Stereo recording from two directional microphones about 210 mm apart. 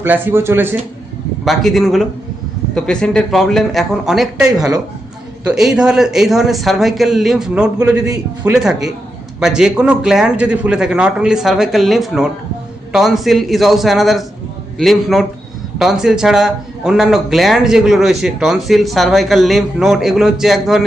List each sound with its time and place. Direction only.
0.0 s speech: 10° right (ahead or behind)
7.9 s speech: 15° right (ahead or behind)
8.5 s speech: centre (ahead or behind)